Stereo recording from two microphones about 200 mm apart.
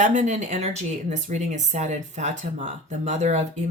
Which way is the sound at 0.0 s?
35° right (ahead or behind).